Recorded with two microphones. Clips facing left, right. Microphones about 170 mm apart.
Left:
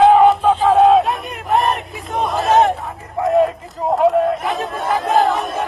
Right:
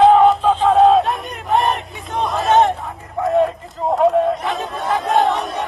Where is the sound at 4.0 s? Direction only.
Centre (ahead or behind).